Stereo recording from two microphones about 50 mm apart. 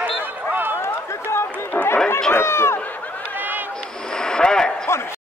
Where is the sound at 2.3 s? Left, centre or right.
Left.